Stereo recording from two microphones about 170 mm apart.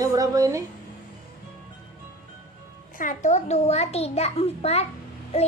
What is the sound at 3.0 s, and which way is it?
A child's voice, 45° left (ahead or behind).